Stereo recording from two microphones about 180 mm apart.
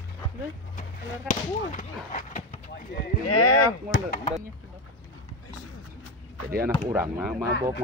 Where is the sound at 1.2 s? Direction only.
45° left (ahead or behind).